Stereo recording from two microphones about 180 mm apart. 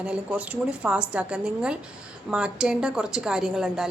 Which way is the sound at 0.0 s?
5° right (ahead or behind).